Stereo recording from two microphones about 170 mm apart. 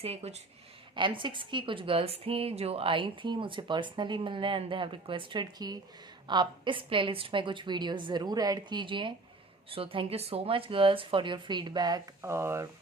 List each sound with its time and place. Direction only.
0.0 s a woman's voice: 40° right (ahead or behind); by 12.6 s 15° right (ahead or behind)